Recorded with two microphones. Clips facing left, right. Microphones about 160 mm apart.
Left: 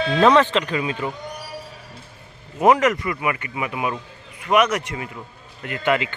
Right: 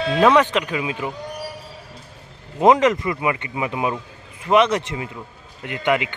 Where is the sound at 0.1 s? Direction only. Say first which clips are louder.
Even; 10° right (ahead or behind).